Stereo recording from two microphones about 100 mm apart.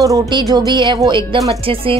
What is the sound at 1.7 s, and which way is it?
Speech, 65° right (ahead or behind).